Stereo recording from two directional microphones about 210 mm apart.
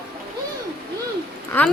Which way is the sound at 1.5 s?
10° left (ahead or behind).